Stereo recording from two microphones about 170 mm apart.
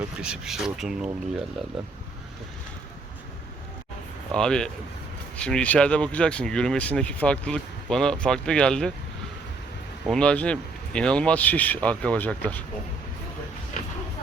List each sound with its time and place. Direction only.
0.2 s speech: 5° right (ahead or behind)
4.3 s speech: 5° left (ahead or behind)
10.1 s speech: 5° left (ahead or behind)